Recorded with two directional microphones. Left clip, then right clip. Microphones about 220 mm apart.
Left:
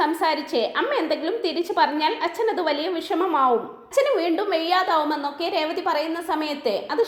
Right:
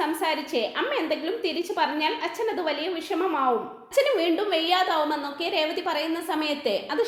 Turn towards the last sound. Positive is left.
turn(degrees=15)  # may be behind; listen again after turning